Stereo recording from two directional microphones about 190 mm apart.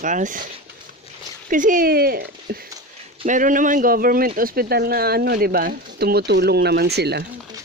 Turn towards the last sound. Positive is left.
turn(degrees=-60)  # may be behind; listen again after turning